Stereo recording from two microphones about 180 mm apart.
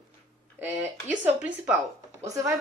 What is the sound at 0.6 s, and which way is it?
Speech, 10° right (ahead or behind).